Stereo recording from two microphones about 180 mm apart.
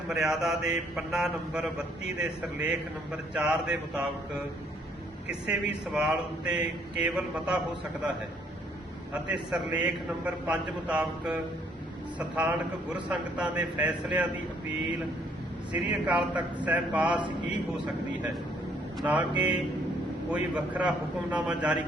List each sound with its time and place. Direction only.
0.1 s speech: centre (ahead or behind)
5.3 s speech: 5° right (ahead or behind)
9.1 s a man's voice: 5° right (ahead or behind)
12.4 s a man's voice: 5° right (ahead or behind)
15.7 s a man's voice: 5° right (ahead or behind)
17.1 s mantra: 25° right (ahead or behind)
18.9 s a man's voice: 10° right (ahead or behind)
20.3 s a man's voice: 10° right (ahead or behind)